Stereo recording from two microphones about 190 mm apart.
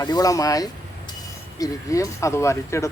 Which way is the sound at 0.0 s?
20° left (ahead or behind).